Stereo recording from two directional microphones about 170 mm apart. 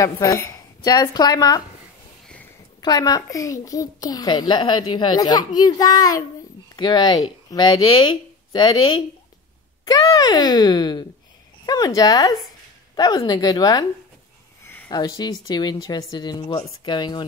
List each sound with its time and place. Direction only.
0.0 s a woman's voice: 20° left (ahead or behind)
2.8 s a child's voice: 20° left (ahead or behind)
14.6 s a sound: 10° left (ahead or behind)
14.9 s a child's voice: 25° left (ahead or behind)